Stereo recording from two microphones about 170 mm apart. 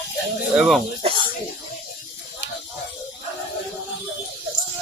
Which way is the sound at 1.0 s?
35° right (ahead or behind).